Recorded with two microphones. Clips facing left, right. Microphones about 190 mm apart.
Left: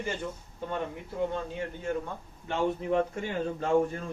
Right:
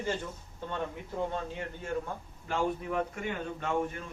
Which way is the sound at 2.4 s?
25° left (ahead or behind).